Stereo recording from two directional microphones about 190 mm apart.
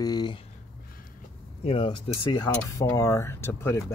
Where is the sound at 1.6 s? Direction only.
30° left (ahead or behind); by 3.8 s 15° left (ahead or behind).